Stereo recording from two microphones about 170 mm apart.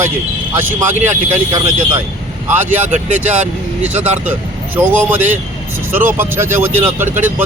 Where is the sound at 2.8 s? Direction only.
45° right (ahead or behind).